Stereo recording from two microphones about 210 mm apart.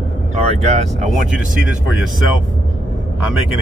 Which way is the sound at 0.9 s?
5° right (ahead or behind).